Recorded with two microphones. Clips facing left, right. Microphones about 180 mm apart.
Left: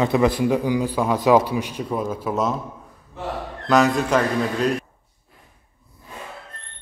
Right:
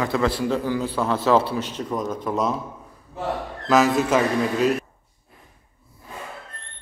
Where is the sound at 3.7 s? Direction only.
5° right (ahead or behind).